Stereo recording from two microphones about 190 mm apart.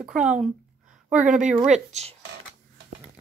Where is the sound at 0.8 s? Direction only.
40° right (ahead or behind).